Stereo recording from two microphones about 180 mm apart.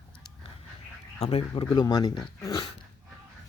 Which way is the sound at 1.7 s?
20° left (ahead or behind).